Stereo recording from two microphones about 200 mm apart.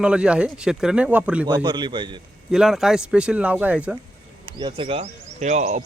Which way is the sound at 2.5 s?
Centre (ahead or behind).